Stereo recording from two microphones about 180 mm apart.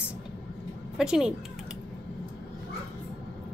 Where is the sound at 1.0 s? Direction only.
5° right (ahead or behind).